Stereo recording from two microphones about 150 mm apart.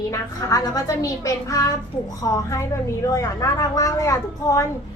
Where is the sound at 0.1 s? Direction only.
20° left (ahead or behind).